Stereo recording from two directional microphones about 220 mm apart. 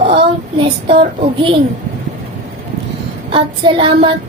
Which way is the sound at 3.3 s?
20° right (ahead or behind).